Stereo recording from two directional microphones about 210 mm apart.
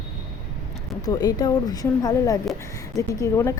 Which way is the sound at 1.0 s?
20° left (ahead or behind).